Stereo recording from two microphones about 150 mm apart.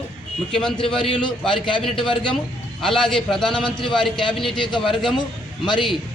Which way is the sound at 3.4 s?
30° left (ahead or behind).